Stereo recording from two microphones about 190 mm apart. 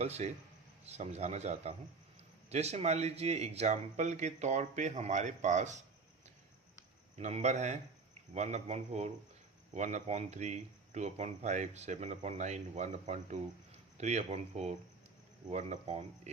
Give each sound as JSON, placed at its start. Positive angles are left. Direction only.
{"t": 0.0, "sound": "speech", "side_deg": -35}
{"t": 7.2, "sound": "speech", "side_deg": -35}